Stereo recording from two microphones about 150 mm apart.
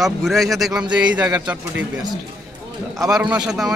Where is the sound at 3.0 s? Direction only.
5° right (ahead or behind).